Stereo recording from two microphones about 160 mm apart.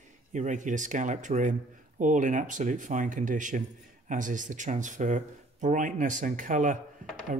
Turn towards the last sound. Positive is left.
turn(degrees=-50)  # may be behind; listen again after turning